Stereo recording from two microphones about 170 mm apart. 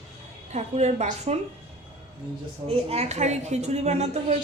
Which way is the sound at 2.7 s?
35° right (ahead or behind).